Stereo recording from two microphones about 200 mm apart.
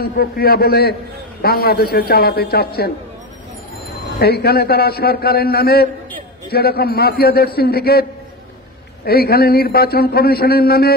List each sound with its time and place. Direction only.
0.0 s a man's voice: 50° left (ahead or behind)
4.2 s a man's voice: 50° left (ahead or behind)